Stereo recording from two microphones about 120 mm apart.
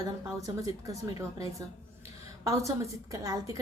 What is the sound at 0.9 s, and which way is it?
A woman's voice, 25° right (ahead or behind).